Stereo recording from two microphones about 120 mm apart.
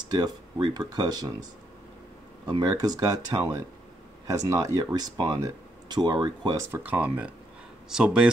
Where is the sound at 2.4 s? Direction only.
35° right (ahead or behind).